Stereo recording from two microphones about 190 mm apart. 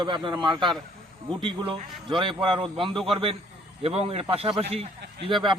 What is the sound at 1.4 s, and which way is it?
A man's voice, 25° right (ahead or behind).